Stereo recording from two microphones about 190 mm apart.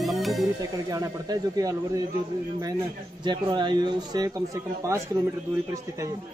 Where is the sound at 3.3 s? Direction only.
25° right (ahead or behind).